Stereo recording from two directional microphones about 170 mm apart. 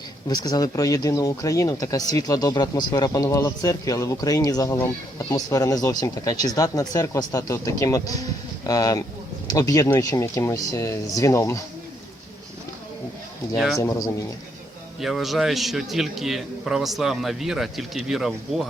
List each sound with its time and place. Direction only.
0.3 s speech: 20° left (ahead or behind)
13.7 s speech: 20° left (ahead or behind)
15.0 s a man's voice: centre (ahead or behind)